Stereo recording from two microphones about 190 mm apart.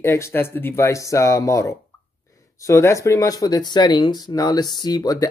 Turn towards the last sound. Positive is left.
turn(degrees=20)  # may be behind; listen again after turning